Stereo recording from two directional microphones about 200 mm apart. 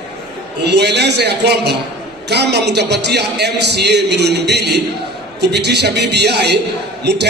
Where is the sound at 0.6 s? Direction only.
55° right (ahead or behind).